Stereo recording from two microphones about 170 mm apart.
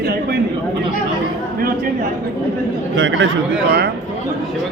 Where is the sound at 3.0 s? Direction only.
90° right.